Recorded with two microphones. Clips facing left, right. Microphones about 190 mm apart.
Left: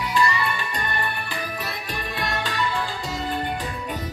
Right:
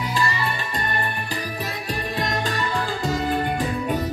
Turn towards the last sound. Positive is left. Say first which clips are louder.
# right 3 dB
turn(degrees=-45)  # may be behind; listen again after turning